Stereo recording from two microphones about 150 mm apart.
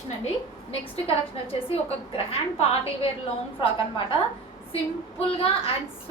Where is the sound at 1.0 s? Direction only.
40° left (ahead or behind).